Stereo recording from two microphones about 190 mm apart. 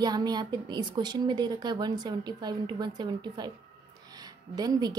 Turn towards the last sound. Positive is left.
turn(degrees=-20)  # may be behind; listen again after turning